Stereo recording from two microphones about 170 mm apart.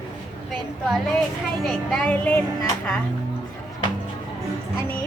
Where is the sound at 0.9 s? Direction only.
Centre (ahead or behind).